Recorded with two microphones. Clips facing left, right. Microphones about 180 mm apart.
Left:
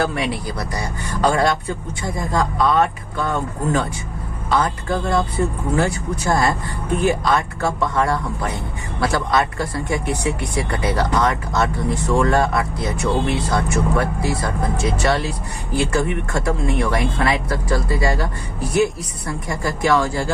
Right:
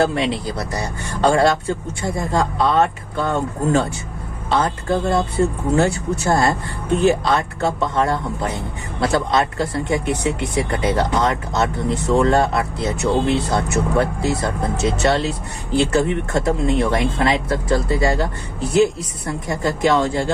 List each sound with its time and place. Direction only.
0.0 s speech: 25° right (ahead or behind)